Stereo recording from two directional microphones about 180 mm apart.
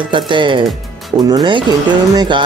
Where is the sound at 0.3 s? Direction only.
25° right (ahead or behind).